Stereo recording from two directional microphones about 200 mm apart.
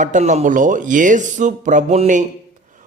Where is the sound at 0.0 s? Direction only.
35° right (ahead or behind).